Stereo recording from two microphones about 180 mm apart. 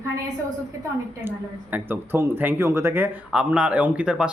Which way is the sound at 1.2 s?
10° right (ahead or behind).